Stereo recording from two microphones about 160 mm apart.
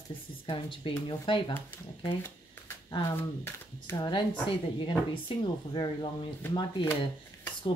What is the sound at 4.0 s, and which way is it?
Speech, 30° left (ahead or behind).